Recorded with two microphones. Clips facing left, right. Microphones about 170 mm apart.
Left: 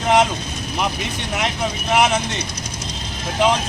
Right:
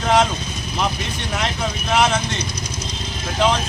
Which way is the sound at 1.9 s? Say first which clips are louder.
Left 1 dB; 15° left (ahead or behind).